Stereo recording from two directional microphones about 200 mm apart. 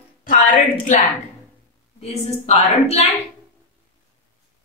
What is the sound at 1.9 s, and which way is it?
A woman's voice, 30° left (ahead or behind).